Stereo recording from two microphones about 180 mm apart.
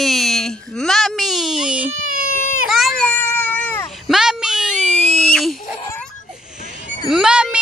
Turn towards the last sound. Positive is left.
turn(degrees=-5)  # may be behind; listen again after turning